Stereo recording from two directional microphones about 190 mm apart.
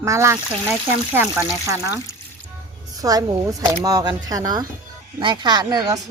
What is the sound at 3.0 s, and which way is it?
A woman's voice, 20° right (ahead or behind).